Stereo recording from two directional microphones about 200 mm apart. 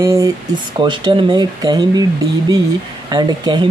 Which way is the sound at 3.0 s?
20° right (ahead or behind).